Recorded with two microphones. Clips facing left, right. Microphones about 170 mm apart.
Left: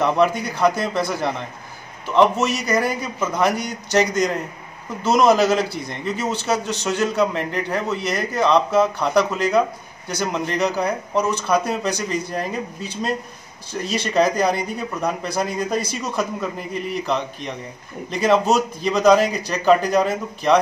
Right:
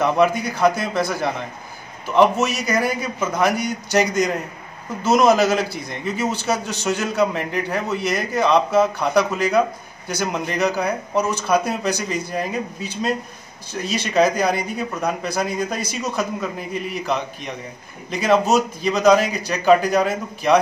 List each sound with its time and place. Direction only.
0.0 s a man's voice: 5° right (ahead or behind)
13.8 s a man's voice: centre (ahead or behind)